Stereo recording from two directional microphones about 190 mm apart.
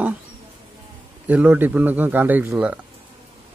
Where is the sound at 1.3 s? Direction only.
10° right (ahead or behind).